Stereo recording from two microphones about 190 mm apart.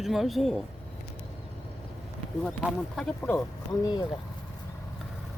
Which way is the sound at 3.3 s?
15° left (ahead or behind).